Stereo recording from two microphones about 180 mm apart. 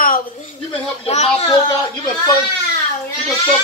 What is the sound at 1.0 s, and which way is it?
Speech, 35° left (ahead or behind).